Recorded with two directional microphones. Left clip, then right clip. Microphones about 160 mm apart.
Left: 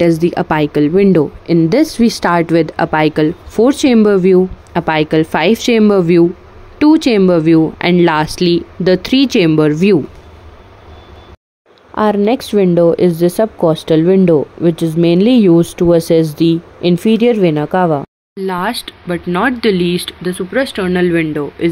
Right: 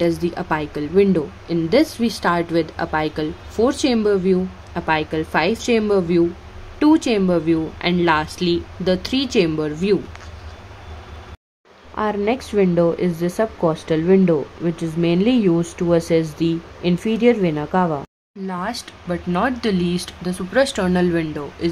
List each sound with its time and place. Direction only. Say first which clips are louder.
0.0 s speech: left 8 dB; 40° left (ahead or behind)
11.9 s speech: left 8 dB; 35° left (ahead or behind)
18.4 s speech: left 9 dB; 25° left (ahead or behind)
19.0 s speech: left 6 dB; 10° left (ahead or behind)
20.3 s speech: left 1 dB; 5° right (ahead or behind)